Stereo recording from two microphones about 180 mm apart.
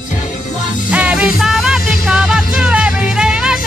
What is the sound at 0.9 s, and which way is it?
Music, 5° right (ahead or behind).